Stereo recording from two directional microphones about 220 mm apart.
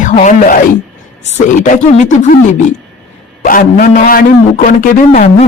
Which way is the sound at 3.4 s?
35° left (ahead or behind).